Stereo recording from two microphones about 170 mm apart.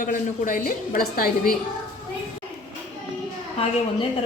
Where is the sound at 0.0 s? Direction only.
55° left (ahead or behind).